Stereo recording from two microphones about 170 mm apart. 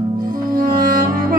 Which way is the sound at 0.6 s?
55° right (ahead or behind).